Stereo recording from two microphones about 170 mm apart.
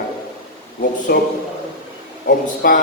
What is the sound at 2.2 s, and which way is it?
Speech, 65° left (ahead or behind).